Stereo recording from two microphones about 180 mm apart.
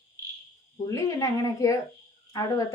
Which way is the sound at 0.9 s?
20° left (ahead or behind).